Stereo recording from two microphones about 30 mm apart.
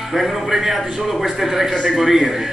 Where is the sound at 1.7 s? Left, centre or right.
Centre.